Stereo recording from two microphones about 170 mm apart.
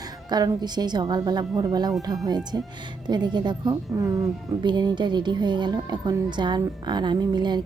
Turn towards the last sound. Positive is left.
turn(degrees=-25)  # may be behind; listen again after turning